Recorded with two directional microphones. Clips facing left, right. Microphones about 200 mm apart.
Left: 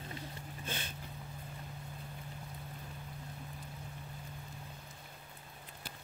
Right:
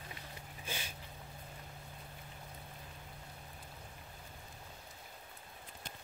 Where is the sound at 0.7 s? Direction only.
10° right (ahead or behind).